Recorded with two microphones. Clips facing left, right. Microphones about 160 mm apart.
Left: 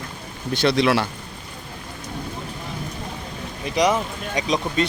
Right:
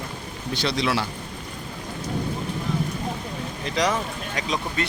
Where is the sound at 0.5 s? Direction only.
55° left (ahead or behind).